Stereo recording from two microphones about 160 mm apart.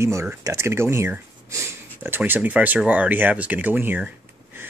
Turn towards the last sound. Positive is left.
turn(degrees=-10)  # may be behind; listen again after turning